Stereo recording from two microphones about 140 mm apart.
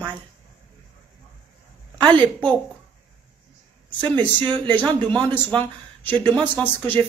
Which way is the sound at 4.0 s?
30° right (ahead or behind).